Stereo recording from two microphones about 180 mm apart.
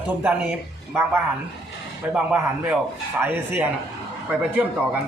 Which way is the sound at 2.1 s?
5° right (ahead or behind).